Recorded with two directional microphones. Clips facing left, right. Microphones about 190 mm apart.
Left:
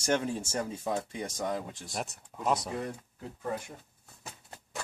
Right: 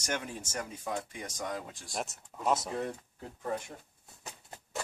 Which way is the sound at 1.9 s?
Centre (ahead or behind).